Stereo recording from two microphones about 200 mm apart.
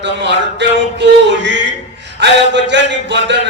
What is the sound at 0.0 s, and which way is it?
Speech, 60° right (ahead or behind).